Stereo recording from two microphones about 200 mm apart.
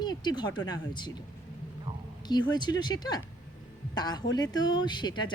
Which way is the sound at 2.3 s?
20° left (ahead or behind).